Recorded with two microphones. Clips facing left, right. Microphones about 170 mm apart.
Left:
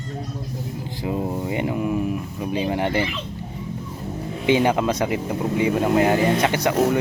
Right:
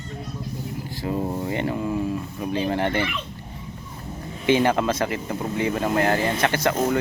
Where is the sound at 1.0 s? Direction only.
15° left (ahead or behind).